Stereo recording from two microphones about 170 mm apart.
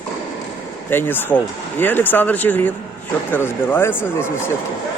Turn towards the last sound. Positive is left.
turn(degrees=15)  # may be behind; listen again after turning